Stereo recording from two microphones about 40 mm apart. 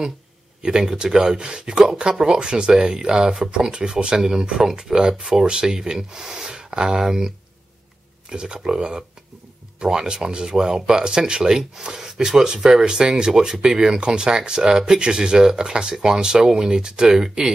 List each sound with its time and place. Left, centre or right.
0.6 s speech: centre